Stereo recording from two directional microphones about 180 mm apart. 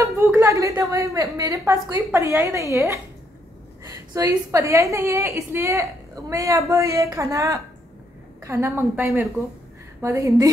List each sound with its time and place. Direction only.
0.0 s a woman's voice: 15° right (ahead or behind)